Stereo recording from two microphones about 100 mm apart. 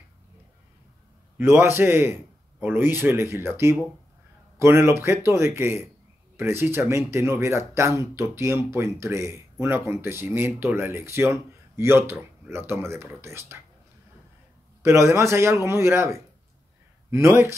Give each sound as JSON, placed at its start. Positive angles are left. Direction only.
{"t": 1.6, "sound": "speech", "side_deg": -25}
{"t": 14.8, "sound": "speech", "side_deg": -25}